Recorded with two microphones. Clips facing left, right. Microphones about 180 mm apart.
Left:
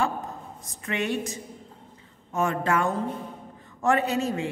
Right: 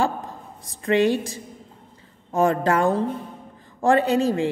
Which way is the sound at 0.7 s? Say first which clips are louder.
Right 10 dB; 30° right (ahead or behind).